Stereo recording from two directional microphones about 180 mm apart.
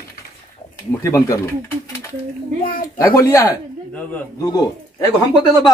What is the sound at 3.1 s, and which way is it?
A man's voice, 20° left (ahead or behind).